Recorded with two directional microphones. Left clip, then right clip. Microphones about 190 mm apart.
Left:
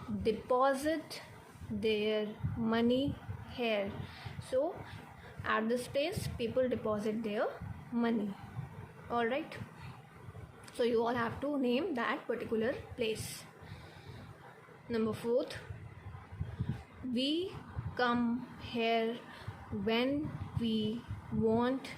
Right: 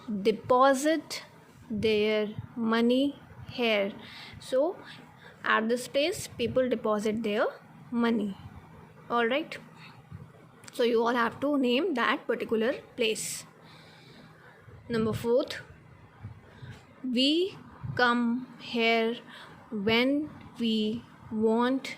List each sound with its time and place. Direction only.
0.2 s a woman's voice: 35° right (ahead or behind)
10.8 s a woman's voice: 35° right (ahead or behind)
14.8 s a woman's voice: 35° right (ahead or behind)
17.1 s a woman's voice: 40° right (ahead or behind)